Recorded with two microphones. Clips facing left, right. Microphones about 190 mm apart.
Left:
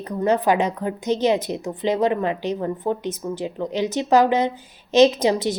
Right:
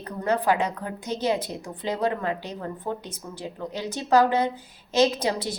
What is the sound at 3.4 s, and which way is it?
A woman's voice, 20° left (ahead or behind).